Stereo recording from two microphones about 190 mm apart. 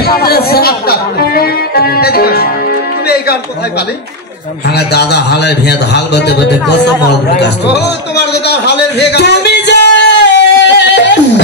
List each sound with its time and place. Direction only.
0.0 s speech: 55° left (ahead or behind)
4.6 s a man's voice: 60° left (ahead or behind)
8.3 s a sound: 60° left (ahead or behind)